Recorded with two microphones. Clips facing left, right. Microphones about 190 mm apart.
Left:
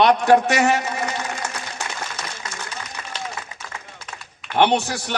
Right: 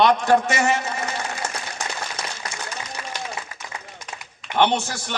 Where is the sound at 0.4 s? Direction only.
60° left (ahead or behind).